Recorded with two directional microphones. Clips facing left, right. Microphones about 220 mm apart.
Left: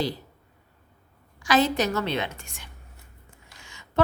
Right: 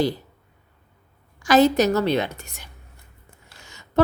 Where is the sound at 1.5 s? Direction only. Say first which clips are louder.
Right 6 dB; 40° right (ahead or behind).